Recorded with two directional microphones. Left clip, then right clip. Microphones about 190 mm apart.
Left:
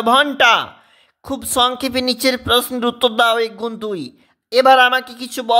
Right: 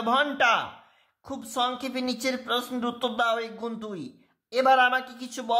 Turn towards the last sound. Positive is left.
turn(degrees=35)  # may be behind; listen again after turning